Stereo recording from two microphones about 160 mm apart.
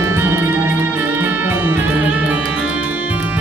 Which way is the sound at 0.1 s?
15° right (ahead or behind).